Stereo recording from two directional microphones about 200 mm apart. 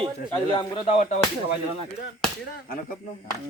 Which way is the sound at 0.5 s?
30° left (ahead or behind).